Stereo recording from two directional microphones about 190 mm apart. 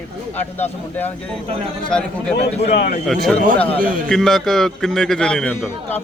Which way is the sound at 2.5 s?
35° left (ahead or behind).